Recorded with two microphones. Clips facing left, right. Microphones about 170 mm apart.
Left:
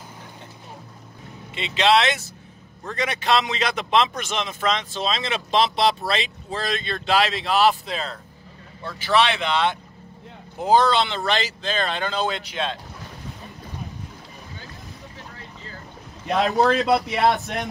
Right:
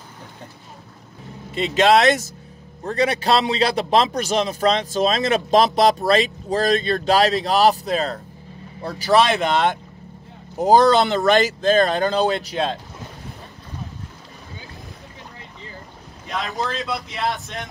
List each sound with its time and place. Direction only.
1.5 s a man's voice: 40° right (ahead or behind)
16.5 s speech: 65° left (ahead or behind)